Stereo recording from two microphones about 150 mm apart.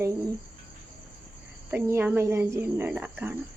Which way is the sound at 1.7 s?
15° right (ahead or behind).